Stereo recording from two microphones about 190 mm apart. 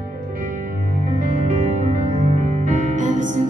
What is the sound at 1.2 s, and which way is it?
Music, 40° right (ahead or behind).